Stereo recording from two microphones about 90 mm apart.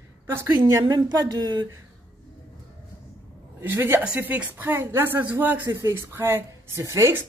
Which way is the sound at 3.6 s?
25° right (ahead or behind).